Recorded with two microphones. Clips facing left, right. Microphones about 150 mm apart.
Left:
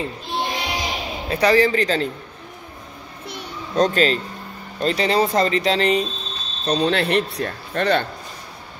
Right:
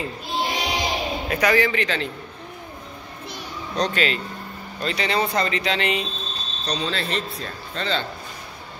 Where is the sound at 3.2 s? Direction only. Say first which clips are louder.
Left 2 dB; 60° left (ahead or behind).